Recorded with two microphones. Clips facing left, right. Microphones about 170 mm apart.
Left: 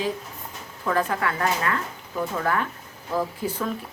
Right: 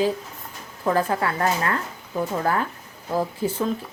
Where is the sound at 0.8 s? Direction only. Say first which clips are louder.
Right 2 dB; 30° right (ahead or behind).